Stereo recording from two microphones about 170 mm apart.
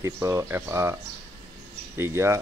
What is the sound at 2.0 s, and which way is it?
Speech, 15° right (ahead or behind).